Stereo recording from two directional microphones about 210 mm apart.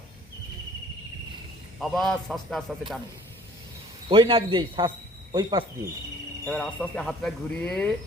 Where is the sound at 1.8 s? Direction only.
Centre (ahead or behind).